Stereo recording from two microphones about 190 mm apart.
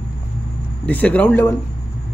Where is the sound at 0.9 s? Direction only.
10° left (ahead or behind).